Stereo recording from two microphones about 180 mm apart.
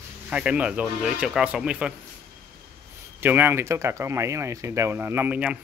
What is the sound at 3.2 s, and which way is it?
Speech, 10° right (ahead or behind).